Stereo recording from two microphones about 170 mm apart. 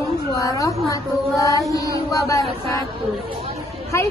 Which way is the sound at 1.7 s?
20° left (ahead or behind).